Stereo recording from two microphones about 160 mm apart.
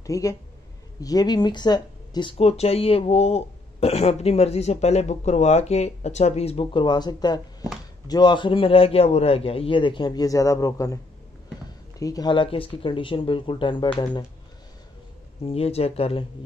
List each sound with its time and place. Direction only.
0.0 s speech: 20° left (ahead or behind)
12.0 s speech: 25° left (ahead or behind)
15.4 s speech: 40° left (ahead or behind)